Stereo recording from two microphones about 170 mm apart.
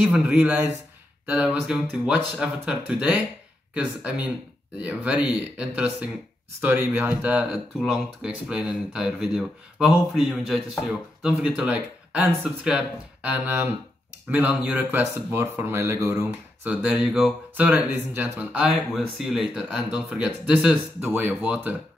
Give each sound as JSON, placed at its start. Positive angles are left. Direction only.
{"t": 0.0, "sound": "speech", "side_deg": -5}